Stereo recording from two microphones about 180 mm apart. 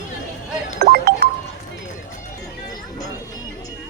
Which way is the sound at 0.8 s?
60° right (ahead or behind).